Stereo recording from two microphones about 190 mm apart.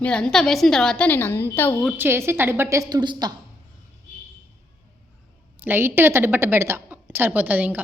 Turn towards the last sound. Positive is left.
turn(degrees=-10)  # may be behind; listen again after turning